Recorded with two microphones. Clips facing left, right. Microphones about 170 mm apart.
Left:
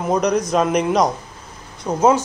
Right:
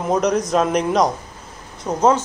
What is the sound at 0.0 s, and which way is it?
Speech, centre (ahead or behind).